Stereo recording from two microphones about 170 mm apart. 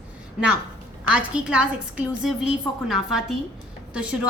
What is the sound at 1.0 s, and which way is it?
A woman's voice, 5° right (ahead or behind).